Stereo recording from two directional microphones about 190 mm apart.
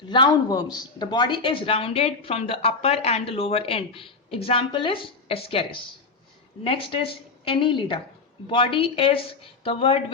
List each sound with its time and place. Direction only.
0.1 s speech: 25° left (ahead or behind)